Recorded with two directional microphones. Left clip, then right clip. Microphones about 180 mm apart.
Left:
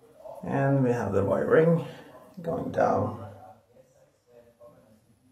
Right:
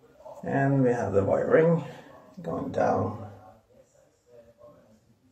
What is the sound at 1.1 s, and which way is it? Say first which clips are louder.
Speech: left 1 dB; centre (ahead or behind).